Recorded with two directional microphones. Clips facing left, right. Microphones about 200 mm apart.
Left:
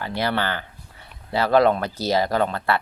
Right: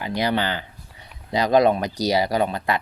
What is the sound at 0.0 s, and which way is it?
Speech, 15° right (ahead or behind).